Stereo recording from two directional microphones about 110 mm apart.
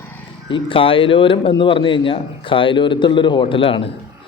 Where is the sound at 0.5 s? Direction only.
55° left (ahead or behind).